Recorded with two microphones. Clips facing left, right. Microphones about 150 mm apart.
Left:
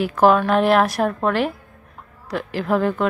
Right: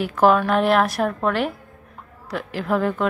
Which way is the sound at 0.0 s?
Centre (ahead or behind).